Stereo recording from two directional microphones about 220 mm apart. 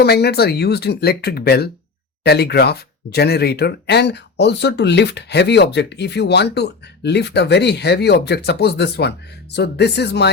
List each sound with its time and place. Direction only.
0.0 s speech: 45° left (ahead or behind)